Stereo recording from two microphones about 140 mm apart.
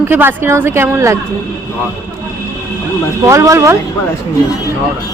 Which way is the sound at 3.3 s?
20° right (ahead or behind).